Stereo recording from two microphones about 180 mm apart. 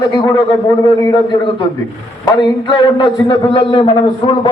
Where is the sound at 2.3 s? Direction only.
25° left (ahead or behind).